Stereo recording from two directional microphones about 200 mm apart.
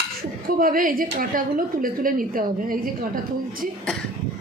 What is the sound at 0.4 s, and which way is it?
A woman's voice, 45° right (ahead or behind).